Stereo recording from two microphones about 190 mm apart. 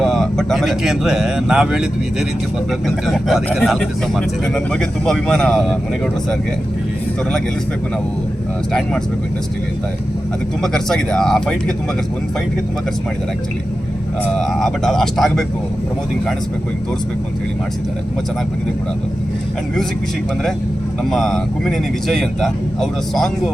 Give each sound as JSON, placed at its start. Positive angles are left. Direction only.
{"t": 0.0, "sound": "speech", "side_deg": 0}
{"t": 10.6, "sound": "speech", "side_deg": 0}
{"t": 14.3, "sound": "speech", "side_deg": 0}
{"t": 21.0, "sound": "speech", "side_deg": 0}